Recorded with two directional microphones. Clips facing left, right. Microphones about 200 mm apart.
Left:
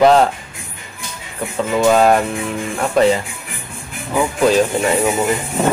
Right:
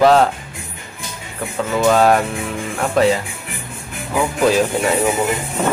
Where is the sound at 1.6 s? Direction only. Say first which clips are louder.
Left 1 dB; 10° left (ahead or behind).